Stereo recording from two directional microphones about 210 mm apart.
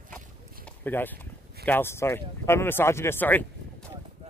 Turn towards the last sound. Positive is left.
turn(degrees=10)  # may be behind; listen again after turning